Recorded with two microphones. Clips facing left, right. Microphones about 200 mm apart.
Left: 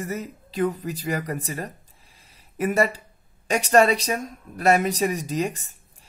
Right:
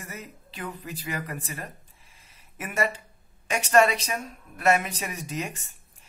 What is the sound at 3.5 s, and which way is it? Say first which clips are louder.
Speech: left 3 dB; 35° left (ahead or behind).